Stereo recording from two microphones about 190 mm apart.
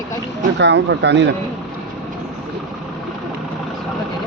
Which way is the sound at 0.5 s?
65° right (ahead or behind).